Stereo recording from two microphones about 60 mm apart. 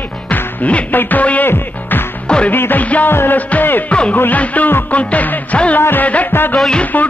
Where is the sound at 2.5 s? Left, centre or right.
Left.